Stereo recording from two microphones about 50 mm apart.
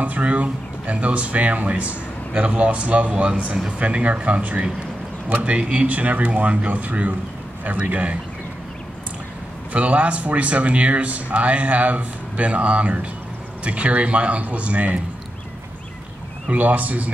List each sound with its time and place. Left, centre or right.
0.0 s speech: right
9.7 s speech: right
16.4 s a man's voice: right